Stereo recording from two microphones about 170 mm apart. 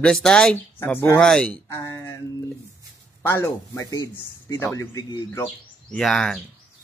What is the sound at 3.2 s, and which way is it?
Speech, 15° left (ahead or behind).